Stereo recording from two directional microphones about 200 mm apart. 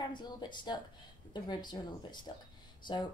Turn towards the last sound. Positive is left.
turn(degrees=20)  # may be behind; listen again after turning